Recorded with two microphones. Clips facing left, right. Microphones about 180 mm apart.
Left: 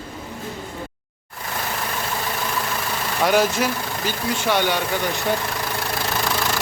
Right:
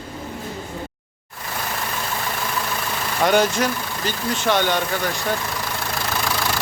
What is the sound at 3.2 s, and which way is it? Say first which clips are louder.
Speech: right 1 dB; 5° left (ahead or behind).